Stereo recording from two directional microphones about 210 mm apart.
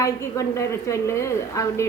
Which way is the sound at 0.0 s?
15° left (ahead or behind).